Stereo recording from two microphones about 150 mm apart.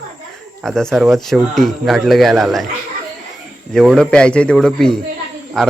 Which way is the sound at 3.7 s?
Centre (ahead or behind).